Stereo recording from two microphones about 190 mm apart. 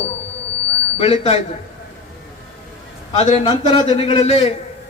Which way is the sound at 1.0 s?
30° left (ahead or behind).